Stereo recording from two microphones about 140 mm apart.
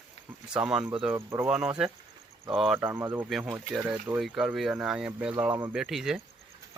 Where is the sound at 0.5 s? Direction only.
5° right (ahead or behind).